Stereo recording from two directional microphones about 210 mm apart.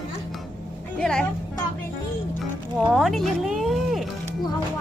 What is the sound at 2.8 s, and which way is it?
Speech, centre (ahead or behind).